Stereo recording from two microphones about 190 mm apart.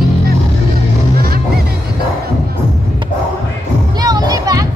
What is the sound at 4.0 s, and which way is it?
Music, 20° right (ahead or behind).